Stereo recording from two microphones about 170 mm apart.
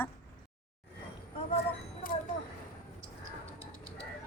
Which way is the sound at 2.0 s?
55° left (ahead or behind).